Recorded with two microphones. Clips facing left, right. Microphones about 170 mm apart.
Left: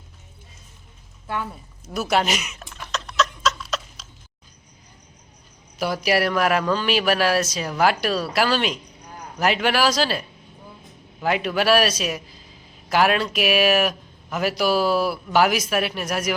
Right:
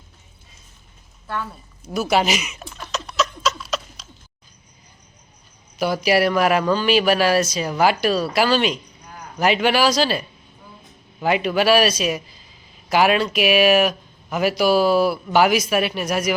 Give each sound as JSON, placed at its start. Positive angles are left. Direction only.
{"t": 1.3, "sound": "speech", "side_deg": 15}
{"t": 1.8, "sound": "a sound", "side_deg": 0}
{"t": 5.8, "sound": "speech", "side_deg": 0}